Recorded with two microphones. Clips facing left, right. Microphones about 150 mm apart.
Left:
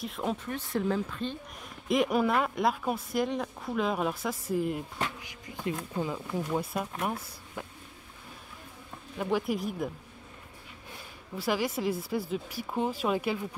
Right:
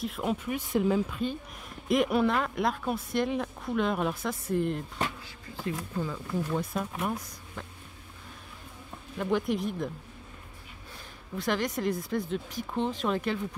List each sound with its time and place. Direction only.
0.0 s speech: centre (ahead or behind)
0.6 s speech: 15° right (ahead or behind); by 6.6 s 15° left (ahead or behind)
6.6 s speech: 5° left (ahead or behind)
9.2 s speech: 5° left (ahead or behind)
11.3 s speech: 5° left (ahead or behind)